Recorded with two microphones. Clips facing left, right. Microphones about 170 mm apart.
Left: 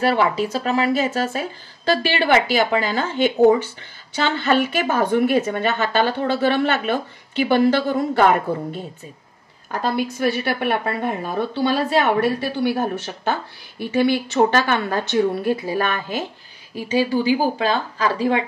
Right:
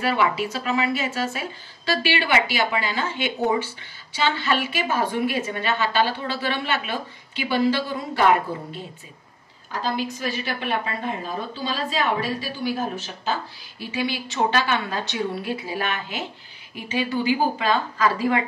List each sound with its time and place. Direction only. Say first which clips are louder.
0.0 s a woman's voice: left 4 dB; 40° left (ahead or behind)